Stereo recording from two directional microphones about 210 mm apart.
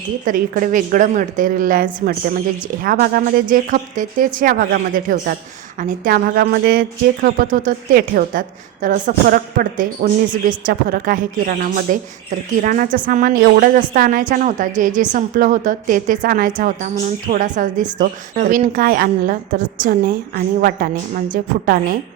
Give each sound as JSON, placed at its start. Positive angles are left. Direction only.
{"t": 0.3, "sound": "a woman's voice", "side_deg": -40}